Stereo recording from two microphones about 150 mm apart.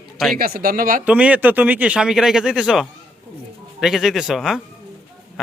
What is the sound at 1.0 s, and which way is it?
A man's voice, 10° right (ahead or behind).